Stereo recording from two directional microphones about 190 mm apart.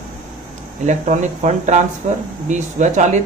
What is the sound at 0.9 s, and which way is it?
Speech, 40° right (ahead or behind).